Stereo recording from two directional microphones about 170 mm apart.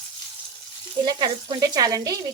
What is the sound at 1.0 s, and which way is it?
Sizzle, 25° right (ahead or behind).